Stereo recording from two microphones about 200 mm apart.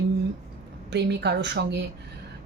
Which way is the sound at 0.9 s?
55° right (ahead or behind).